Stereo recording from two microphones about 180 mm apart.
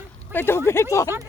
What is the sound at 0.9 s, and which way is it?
Speech, 15° left (ahead or behind).